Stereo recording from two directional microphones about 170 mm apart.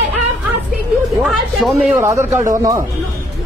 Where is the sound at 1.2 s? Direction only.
Centre (ahead or behind).